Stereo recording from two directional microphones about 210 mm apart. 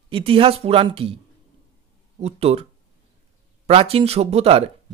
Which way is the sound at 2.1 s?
30° right (ahead or behind).